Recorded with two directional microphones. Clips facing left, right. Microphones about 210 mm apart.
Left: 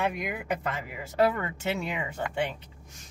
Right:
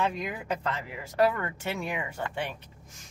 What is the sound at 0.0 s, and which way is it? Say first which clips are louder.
Speech: even; 10° left (ahead or behind).